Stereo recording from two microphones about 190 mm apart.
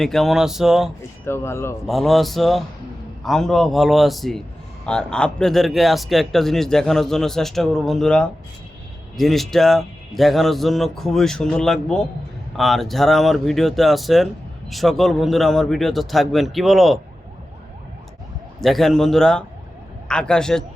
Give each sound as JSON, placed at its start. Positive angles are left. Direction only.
{"t": 0.0, "sound": "a man's voice", "side_deg": 0}
{"t": 1.2, "sound": "speech", "side_deg": 15}
{"t": 1.9, "sound": "a man's voice", "side_deg": 0}
{"t": 18.6, "sound": "a man's voice", "side_deg": 0}